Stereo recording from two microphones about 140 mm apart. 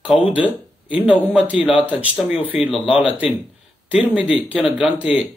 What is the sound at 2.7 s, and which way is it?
Speech, 40° left (ahead or behind).